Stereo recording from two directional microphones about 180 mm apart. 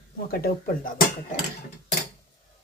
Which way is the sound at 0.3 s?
55° left (ahead or behind).